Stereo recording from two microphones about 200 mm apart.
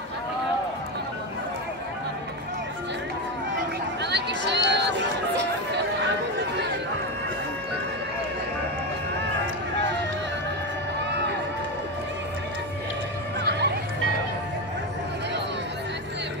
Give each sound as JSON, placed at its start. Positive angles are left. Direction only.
{"t": 4.0, "sound": "chatter", "side_deg": -60}
{"t": 13.4, "sound": "music", "side_deg": -55}